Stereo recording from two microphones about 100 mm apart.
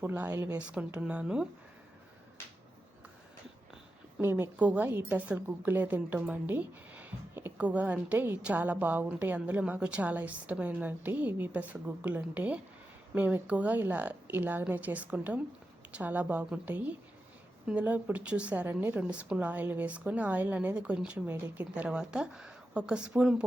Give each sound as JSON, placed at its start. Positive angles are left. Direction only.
{"t": 0.0, "sound": "a woman's voice", "side_deg": -20}
{"t": 4.2, "sound": "a woman's voice", "side_deg": -20}